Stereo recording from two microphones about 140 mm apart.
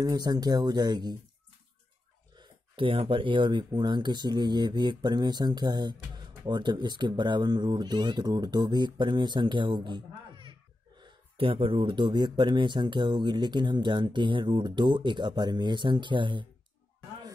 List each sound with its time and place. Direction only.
0.0 s speech: 30° right (ahead or behind)
2.3 s speech: 35° right (ahead or behind)